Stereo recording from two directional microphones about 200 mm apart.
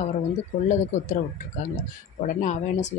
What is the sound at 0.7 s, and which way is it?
Speech, 40° left (ahead or behind).